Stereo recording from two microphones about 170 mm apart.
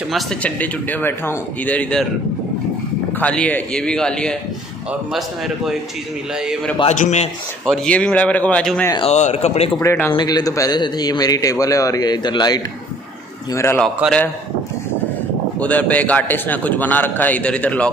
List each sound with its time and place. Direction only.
0.1 s a man's voice: 10° left (ahead or behind)
3.2 s a man's voice: 5° left (ahead or behind)
6.8 s speech: 40° left (ahead or behind)
7.6 s a man's voice: 5° left (ahead or behind)
9.1 s speech: 40° left (ahead or behind)
9.8 s a man's voice: 15° left (ahead or behind)
13.7 s a man's voice: 5° left (ahead or behind)
15.6 s a man's voice: 10° left (ahead or behind)